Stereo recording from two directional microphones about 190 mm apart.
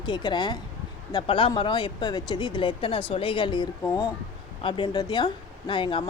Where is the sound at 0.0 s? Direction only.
25° left (ahead or behind).